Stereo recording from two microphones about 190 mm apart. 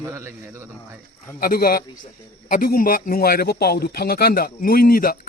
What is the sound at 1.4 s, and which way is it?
Speech, 50° left (ahead or behind).